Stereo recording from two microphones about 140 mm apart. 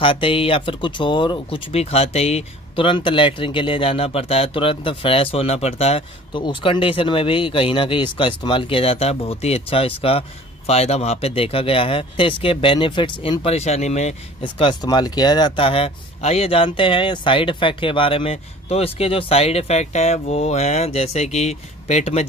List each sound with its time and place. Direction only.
0.0 s speech: 40° left (ahead or behind)
14.4 s speech: 35° left (ahead or behind); by 22.2 s 55° left (ahead or behind)